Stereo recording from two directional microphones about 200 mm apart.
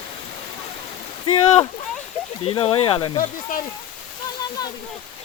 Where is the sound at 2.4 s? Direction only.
30° left (ahead or behind).